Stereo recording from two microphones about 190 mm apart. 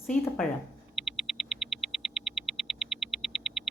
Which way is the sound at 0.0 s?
5° left (ahead or behind).